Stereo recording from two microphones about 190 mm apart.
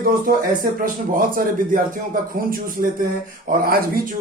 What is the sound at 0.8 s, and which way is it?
Speech, 50° right (ahead or behind).